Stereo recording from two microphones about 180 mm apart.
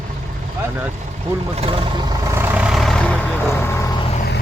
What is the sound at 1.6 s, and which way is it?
Speech, 30° right (ahead or behind).